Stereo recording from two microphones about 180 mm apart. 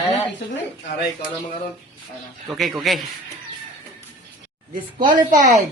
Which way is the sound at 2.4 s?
Centre (ahead or behind).